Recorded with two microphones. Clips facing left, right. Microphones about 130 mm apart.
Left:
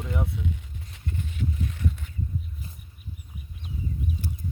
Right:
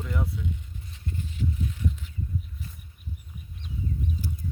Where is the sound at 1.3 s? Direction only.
65° left (ahead or behind).